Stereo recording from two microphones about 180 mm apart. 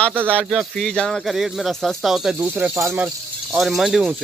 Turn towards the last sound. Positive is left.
turn(degrees=0)  # may be behind; listen again after turning